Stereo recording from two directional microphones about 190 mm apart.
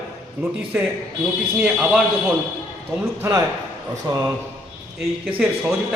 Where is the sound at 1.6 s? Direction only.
5° right (ahead or behind).